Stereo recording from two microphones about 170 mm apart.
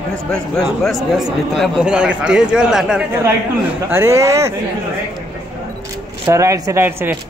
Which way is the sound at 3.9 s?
15° right (ahead or behind).